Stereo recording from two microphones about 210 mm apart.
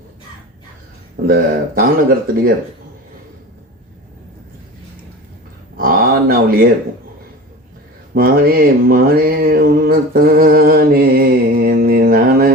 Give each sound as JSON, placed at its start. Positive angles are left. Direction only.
{"t": 1.1, "sound": "mantra", "side_deg": -45}
{"t": 5.7, "sound": "a sound", "side_deg": -45}
{"t": 8.1, "sound": "mantra", "side_deg": -45}